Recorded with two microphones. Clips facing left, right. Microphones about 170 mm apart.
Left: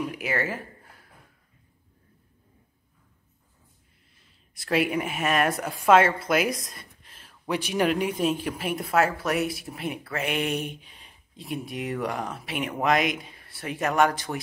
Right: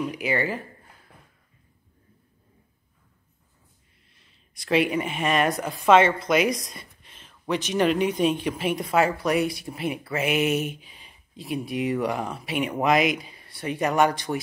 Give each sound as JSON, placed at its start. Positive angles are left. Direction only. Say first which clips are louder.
{"t": 0.1, "sound": "speech", "louder": "right 3 dB", "side_deg": 0}
{"t": 4.6, "sound": "speech", "louder": "right 2 dB", "side_deg": 5}